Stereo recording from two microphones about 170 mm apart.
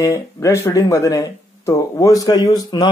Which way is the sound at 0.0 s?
20° left (ahead or behind).